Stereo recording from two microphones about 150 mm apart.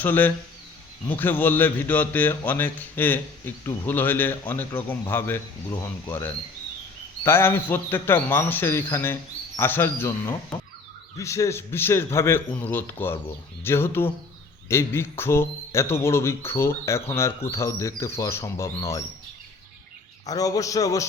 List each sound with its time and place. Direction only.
0.0 s speech: 10° left (ahead or behind)
7.3 s speech: 15° left (ahead or behind)
20.2 s speech: 25° left (ahead or behind)